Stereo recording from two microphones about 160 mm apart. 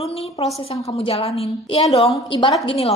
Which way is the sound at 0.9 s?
35° left (ahead or behind).